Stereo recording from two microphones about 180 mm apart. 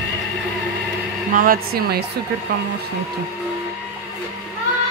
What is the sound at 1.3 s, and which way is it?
Speech, 50° right (ahead or behind).